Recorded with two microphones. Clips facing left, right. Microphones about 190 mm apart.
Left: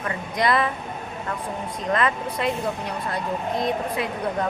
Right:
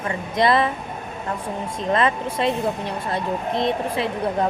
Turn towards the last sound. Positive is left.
turn(degrees=-25)  # may be behind; listen again after turning